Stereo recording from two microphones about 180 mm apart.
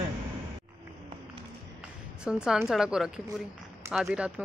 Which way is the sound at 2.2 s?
5° right (ahead or behind).